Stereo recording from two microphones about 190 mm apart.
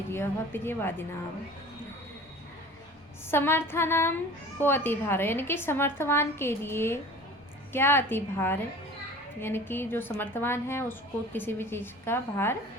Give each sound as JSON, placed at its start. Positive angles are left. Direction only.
{"t": 0.1, "sound": "a woman's voice", "side_deg": 10}
{"t": 3.2, "sound": "a woman's voice", "side_deg": 10}